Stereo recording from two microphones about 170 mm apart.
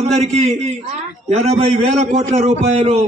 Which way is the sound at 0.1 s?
40° right (ahead or behind).